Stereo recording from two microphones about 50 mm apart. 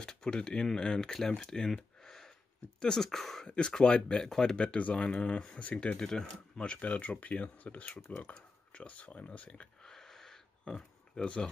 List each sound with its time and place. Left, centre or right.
0.0 s speech: centre
2.0 s a sound: centre
2.8 s speech: centre
3.4 s speech: centre
5.6 s speech: left
5.9 s speech: centre; by 8.0 s left
8.1 s a sound: left; by 10.4 s centre
10.6 s speech: centre